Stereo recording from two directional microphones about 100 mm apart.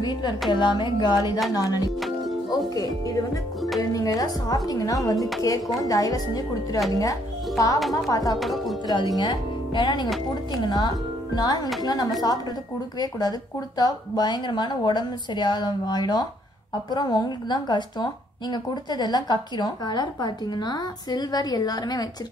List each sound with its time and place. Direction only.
0.0 s a woman's voice: 45° left (ahead or behind)
1.5 s chopping: 40° left (ahead or behind)
3.9 s chopping: 35° left (ahead or behind)
7.0 s speech: 35° left (ahead or behind)
7.9 s chopping: 35° left (ahead or behind)
8.4 s music: centre (ahead or behind)
9.1 s speech: 50° left (ahead or behind)
10.5 s chopping: 45° left (ahead or behind)
11.8 s a woman's voice: 45° left (ahead or behind)